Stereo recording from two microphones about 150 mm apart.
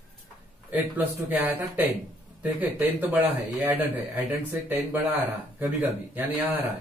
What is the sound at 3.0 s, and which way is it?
Speech, 10° right (ahead or behind).